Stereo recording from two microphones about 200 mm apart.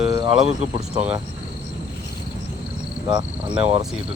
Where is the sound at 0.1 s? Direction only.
25° right (ahead or behind).